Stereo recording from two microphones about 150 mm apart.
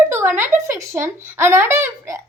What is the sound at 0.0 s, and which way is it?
Speech, 15° right (ahead or behind).